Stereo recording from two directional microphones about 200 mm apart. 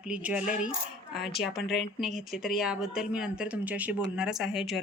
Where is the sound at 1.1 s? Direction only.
55° left (ahead or behind).